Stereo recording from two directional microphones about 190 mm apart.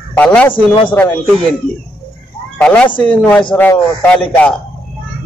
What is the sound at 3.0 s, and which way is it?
Speech, 10° left (ahead or behind).